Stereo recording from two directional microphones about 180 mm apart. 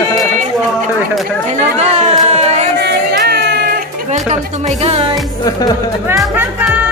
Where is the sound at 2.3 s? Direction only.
40° right (ahead or behind).